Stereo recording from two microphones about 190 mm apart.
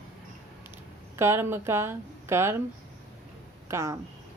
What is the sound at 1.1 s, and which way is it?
Speech, 15° right (ahead or behind).